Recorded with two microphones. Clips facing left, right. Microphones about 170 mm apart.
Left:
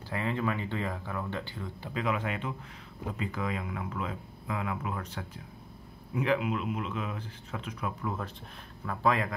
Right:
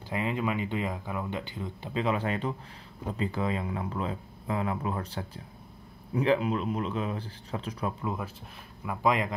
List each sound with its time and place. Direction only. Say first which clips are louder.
0.1 s speech: right 2 dB; 15° right (ahead or behind); by 7.9 s 35° right (ahead or behind)
8.0 s speech: right 2 dB; 15° right (ahead or behind)